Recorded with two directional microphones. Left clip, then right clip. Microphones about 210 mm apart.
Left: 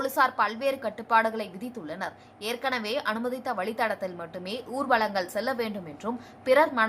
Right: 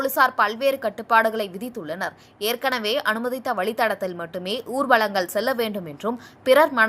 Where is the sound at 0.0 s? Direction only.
15° right (ahead or behind).